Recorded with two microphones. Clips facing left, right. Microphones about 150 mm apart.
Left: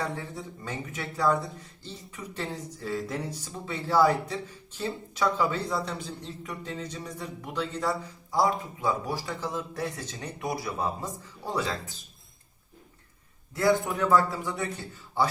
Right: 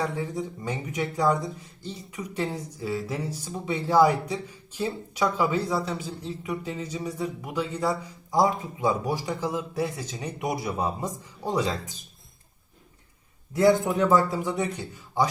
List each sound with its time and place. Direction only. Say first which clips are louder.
0.3 s speech: right 5 dB; 15° right (ahead or behind)
13.5 s a man's voice: right 4 dB; 20° right (ahead or behind)